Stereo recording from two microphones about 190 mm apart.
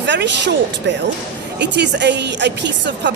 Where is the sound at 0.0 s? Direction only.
65° right (ahead or behind).